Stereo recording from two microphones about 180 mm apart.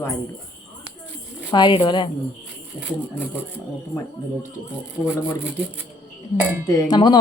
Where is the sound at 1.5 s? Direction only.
25° left (ahead or behind).